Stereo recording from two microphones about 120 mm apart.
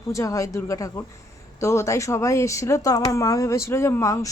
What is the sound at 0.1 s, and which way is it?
Speech, 25° left (ahead or behind).